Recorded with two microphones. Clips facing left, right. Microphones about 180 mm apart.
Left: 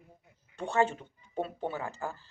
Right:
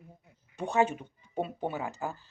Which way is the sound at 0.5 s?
15° right (ahead or behind).